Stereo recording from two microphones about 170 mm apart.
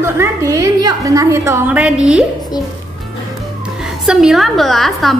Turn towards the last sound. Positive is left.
turn(degrees=0)  # may be behind; listen again after turning